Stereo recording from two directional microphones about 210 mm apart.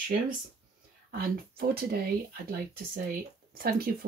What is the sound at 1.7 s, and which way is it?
Speech, 45° right (ahead or behind).